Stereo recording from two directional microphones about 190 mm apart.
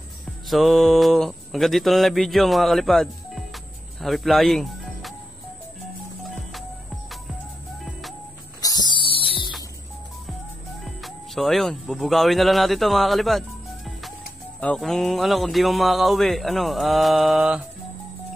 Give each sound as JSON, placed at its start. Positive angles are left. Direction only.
{"t": 0.5, "sound": "speech", "side_deg": 0}
{"t": 8.5, "sound": "music", "side_deg": 20}
{"t": 10.8, "sound": "speech", "side_deg": 0}
{"t": 14.6, "sound": "speech", "side_deg": 5}